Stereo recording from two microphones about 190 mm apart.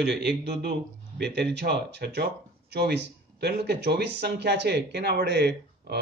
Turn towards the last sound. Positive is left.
turn(degrees=-60)  # may be behind; listen again after turning